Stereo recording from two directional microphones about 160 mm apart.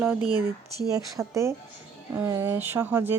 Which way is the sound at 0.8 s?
20° right (ahead or behind).